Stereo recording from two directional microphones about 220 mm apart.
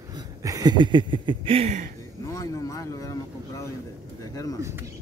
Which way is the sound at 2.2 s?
15° left (ahead or behind).